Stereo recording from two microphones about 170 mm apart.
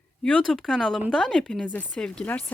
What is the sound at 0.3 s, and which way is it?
Speech, 5° left (ahead or behind).